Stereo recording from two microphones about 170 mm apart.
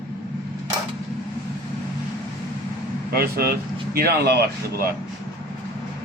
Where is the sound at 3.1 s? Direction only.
60° right (ahead or behind).